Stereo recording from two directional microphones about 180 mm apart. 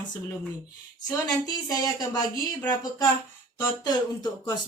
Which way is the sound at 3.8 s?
20° left (ahead or behind).